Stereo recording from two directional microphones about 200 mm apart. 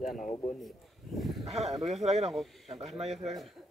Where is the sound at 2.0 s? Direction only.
35° right (ahead or behind).